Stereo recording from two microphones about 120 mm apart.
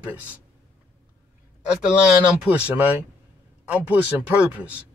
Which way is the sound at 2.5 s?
15° right (ahead or behind).